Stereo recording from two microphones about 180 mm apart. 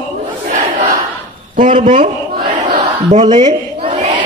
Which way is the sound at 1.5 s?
45° right (ahead or behind).